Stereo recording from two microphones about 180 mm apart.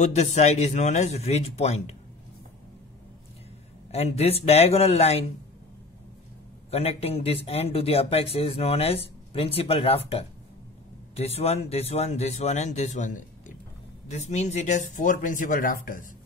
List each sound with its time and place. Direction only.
0.0 s speech: 40° left (ahead or behind)
3.9 s speech: 35° left (ahead or behind)
6.7 s speech: 35° left (ahead or behind)